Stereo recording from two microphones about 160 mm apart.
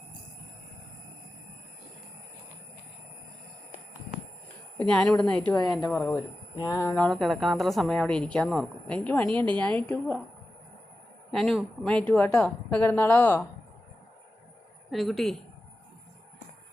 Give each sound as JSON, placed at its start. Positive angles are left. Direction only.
{"t": 4.8, "sound": "a woman's voice", "side_deg": 5}
{"t": 6.6, "sound": "a woman's voice", "side_deg": 20}
{"t": 7.1, "sound": "a woman's voice", "side_deg": 0}
{"t": 11.3, "sound": "a woman's voice", "side_deg": 0}
{"t": 14.8, "sound": "a woman's voice", "side_deg": 0}